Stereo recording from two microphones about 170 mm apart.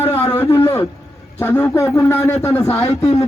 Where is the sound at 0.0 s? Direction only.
10° left (ahead or behind).